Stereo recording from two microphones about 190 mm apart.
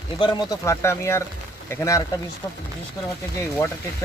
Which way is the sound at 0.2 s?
15° left (ahead or behind).